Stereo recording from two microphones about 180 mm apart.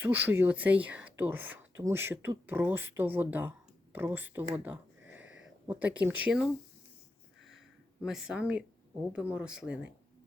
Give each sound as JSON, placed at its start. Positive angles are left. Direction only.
{"t": 0.0, "sound": "speech", "side_deg": -10}
{"t": 4.5, "sound": "a sound", "side_deg": -10}
{"t": 8.0, "sound": "speech", "side_deg": -5}